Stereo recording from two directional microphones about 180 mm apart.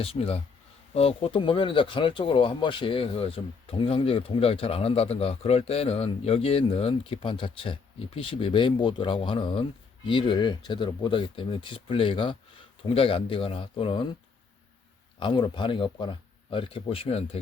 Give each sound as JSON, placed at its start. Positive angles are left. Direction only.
{"t": 0.0, "sound": "speech", "side_deg": 35}
{"t": 15.2, "sound": "speech", "side_deg": 25}